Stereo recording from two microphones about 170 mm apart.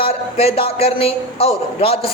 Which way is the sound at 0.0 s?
35° left (ahead or behind).